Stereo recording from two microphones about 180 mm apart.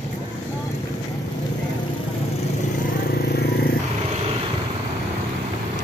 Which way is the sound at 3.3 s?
65° left (ahead or behind).